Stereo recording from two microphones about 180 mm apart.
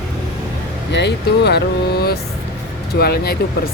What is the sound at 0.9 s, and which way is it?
Speech, 70° left (ahead or behind).